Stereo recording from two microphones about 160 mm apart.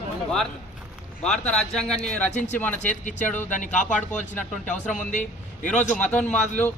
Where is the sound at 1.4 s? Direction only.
5° left (ahead or behind).